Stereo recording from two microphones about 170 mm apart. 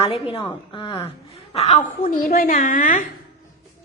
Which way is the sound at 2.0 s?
55° left (ahead or behind).